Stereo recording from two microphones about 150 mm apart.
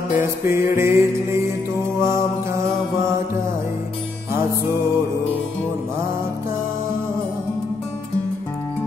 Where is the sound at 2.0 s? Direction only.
20° right (ahead or behind).